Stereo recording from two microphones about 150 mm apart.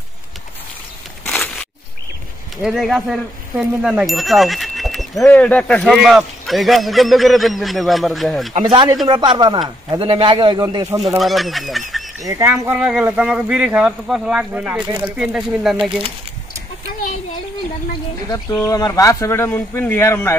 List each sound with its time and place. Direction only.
2.6 s speech: centre (ahead or behind)
9.0 s a man's voice: 30° right (ahead or behind)
11.1 s speech: centre (ahead or behind)
12.2 s speech: 25° right (ahead or behind); by 16.0 s 5° right (ahead or behind)
18.3 s speech: 25° left (ahead or behind)